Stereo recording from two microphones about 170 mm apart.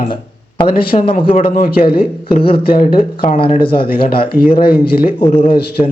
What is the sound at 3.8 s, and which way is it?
Speech, 60° left (ahead or behind).